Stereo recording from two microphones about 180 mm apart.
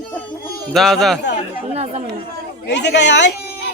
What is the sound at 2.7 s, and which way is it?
Speech, 70° left (ahead or behind).